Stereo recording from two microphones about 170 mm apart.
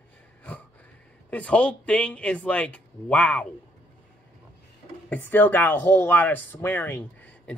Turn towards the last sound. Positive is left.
turn(degrees=10)  # may be behind; listen again after turning